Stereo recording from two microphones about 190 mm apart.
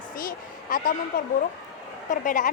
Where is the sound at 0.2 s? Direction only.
50° left (ahead or behind).